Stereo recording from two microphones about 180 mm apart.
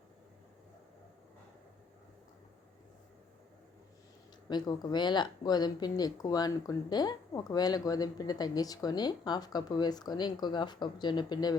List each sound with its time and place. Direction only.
4.4 s speech: 25° left (ahead or behind)